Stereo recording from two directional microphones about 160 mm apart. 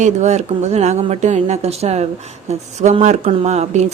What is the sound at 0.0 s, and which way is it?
Speech, 45° right (ahead or behind).